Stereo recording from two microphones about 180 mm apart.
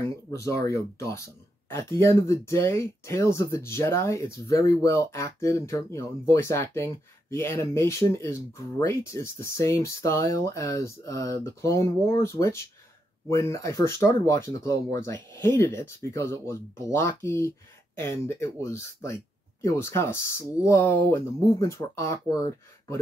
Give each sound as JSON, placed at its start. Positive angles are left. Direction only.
{"t": 0.0, "sound": "speech", "side_deg": 15}